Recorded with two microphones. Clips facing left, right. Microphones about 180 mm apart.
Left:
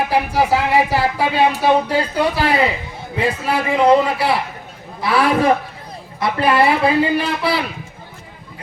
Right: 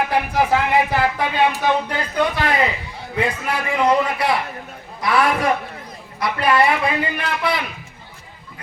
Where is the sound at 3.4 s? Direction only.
30° left (ahead or behind).